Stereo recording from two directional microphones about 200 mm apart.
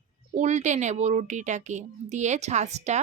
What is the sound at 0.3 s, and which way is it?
A woman's voice, 35° right (ahead or behind).